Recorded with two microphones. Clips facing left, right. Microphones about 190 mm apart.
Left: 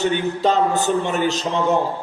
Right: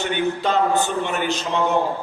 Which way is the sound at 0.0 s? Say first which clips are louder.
Left 3 dB; 40° left (ahead or behind).